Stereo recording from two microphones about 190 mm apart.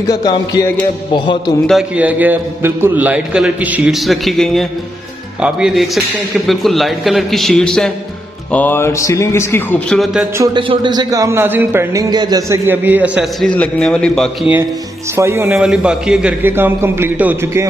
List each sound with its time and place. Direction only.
0.1 s music: 20° left (ahead or behind)
1.7 s a man's voice: 5° right (ahead or behind); by 9.8 s 15° left (ahead or behind)
9.8 s a man's voice: centre (ahead or behind)
10.3 s a man's voice: 15° right (ahead or behind); by 14.3 s 5° left (ahead or behind)
15.1 s a man's voice: 15° right (ahead or behind)